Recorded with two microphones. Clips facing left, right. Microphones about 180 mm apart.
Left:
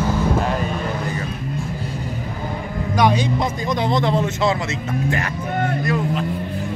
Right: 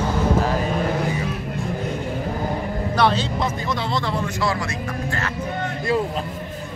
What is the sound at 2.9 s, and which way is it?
A man's voice, 15° left (ahead or behind).